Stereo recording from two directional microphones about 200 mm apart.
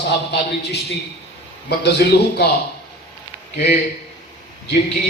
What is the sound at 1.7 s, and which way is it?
Speech, 55° left (ahead or behind).